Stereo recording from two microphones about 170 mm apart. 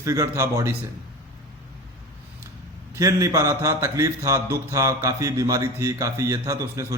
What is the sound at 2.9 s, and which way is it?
A man's voice, 20° right (ahead or behind).